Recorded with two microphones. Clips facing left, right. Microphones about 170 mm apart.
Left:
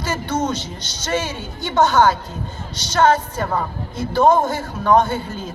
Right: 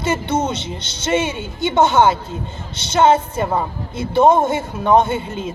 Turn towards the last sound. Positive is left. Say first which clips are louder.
# right 2 dB
turn(degrees=-25)  # may be behind; listen again after turning